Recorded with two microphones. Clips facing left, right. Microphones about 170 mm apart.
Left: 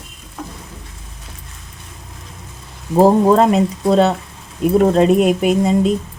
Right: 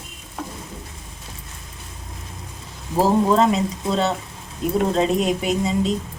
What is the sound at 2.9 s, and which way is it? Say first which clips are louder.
Speech: left 6 dB; 55° left (ahead or behind).